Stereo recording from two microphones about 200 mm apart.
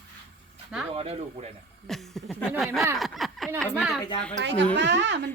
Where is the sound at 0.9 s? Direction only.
30° right (ahead or behind).